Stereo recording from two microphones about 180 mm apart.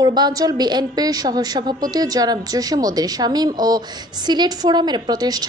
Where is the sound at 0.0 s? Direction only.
25° right (ahead or behind).